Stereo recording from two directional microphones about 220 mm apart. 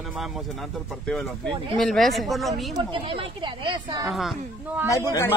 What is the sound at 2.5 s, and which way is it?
A woman's voice, 20° right (ahead or behind).